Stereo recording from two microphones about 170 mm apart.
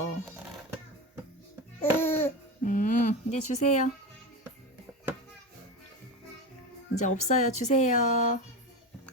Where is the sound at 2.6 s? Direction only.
50° left (ahead or behind).